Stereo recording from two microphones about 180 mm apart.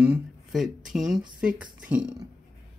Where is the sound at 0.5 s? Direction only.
Centre (ahead or behind).